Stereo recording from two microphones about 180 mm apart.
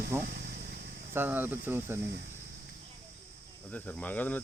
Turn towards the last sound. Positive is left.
turn(degrees=10)  # may be behind; listen again after turning